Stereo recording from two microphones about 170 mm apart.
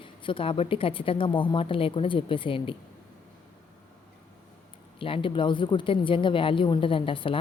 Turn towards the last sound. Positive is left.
turn(degrees=30)  # may be behind; listen again after turning